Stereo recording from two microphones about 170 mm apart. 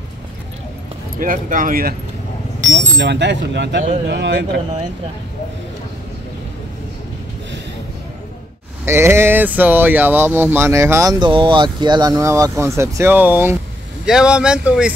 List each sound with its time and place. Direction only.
1.2 s speech: 55° right (ahead or behind)
2.7 s speech: 90° right
8.8 s speech: 15° right (ahead or behind)